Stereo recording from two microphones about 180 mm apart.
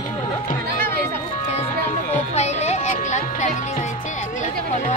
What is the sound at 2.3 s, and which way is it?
Speech, 40° left (ahead or behind).